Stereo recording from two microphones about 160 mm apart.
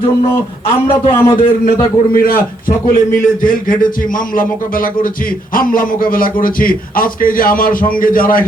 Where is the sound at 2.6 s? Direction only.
60° left (ahead or behind).